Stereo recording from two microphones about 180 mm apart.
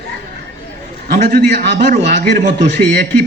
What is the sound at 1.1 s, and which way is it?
Speech, 60° right (ahead or behind).